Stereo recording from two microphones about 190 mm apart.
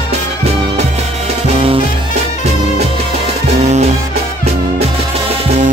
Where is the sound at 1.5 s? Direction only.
30° right (ahead or behind).